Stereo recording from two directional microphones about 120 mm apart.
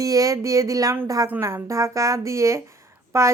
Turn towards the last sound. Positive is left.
turn(degrees=-25)  # may be behind; listen again after turning